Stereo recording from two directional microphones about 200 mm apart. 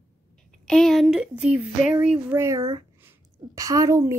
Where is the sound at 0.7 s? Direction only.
Centre (ahead or behind).